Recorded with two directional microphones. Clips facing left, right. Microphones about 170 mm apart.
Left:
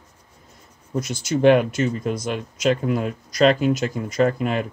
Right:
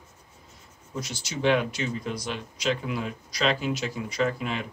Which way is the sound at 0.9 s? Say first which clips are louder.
Left 10 dB; 50° left (ahead or behind).